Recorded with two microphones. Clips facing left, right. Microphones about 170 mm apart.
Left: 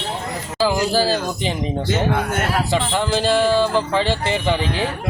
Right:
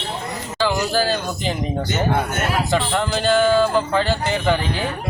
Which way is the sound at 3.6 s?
Centre (ahead or behind).